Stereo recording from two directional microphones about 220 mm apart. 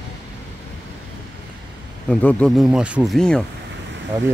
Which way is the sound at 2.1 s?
5° left (ahead or behind).